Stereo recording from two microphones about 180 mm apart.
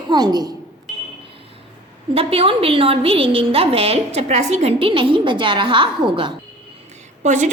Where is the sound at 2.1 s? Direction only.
30° right (ahead or behind).